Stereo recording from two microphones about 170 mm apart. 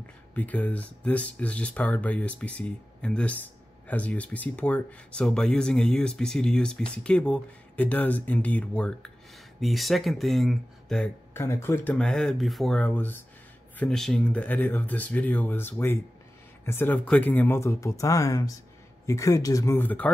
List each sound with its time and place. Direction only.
0.3 s speech: 10° left (ahead or behind)
11.3 s speech: 15° left (ahead or behind)